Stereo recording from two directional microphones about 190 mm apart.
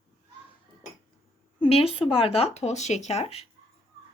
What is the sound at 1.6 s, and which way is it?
Speech, 30° left (ahead or behind).